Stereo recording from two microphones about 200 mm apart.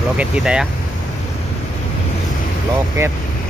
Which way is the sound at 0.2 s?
5° right (ahead or behind).